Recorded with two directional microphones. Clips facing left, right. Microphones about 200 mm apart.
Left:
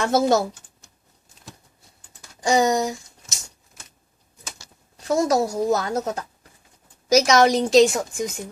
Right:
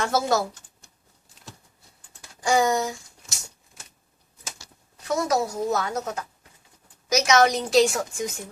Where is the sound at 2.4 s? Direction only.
20° left (ahead or behind).